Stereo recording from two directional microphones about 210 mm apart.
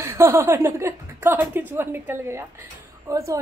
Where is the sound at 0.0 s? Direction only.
10° right (ahead or behind).